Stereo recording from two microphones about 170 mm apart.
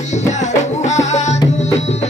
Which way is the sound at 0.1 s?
45° left (ahead or behind).